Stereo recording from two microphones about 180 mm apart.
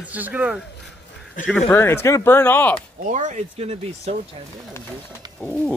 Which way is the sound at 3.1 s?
40° right (ahead or behind).